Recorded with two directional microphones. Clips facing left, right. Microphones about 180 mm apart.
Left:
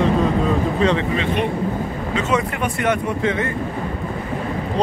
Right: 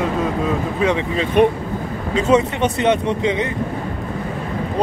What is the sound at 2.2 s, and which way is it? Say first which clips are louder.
Speech: right 7 dB; 25° right (ahead or behind).